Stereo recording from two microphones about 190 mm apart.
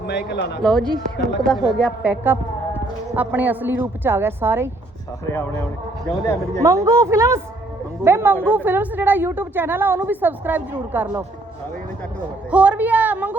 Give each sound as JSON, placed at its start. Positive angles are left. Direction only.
{"t": 0.1, "sound": "speech", "side_deg": 60}
{"t": 0.6, "sound": "speech", "side_deg": 5}
{"t": 2.0, "sound": "a sound", "side_deg": -10}
{"t": 3.2, "sound": "a woman's voice", "side_deg": -10}
{"t": 6.6, "sound": "a woman's voice", "side_deg": -15}
{"t": 12.5, "sound": "a woman's voice", "side_deg": -5}